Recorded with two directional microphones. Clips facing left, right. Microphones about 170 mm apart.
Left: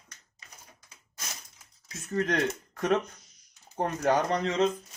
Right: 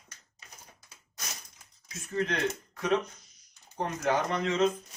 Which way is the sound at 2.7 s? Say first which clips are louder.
Left 2 dB; 50° left (ahead or behind).